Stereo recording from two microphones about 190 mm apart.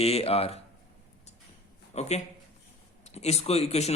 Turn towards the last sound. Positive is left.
turn(degrees=35)  # may be behind; listen again after turning